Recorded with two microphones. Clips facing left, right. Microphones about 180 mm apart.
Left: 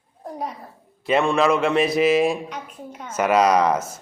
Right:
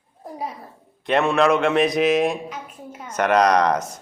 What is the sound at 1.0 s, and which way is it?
A man's voice, centre (ahead or behind).